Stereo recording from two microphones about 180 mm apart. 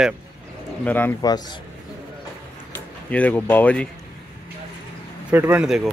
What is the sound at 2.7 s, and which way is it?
Speech, 10° left (ahead or behind).